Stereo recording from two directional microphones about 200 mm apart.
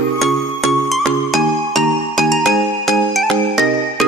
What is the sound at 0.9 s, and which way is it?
Music, centre (ahead or behind).